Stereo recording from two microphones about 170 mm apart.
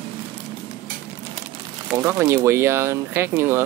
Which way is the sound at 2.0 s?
15° right (ahead or behind).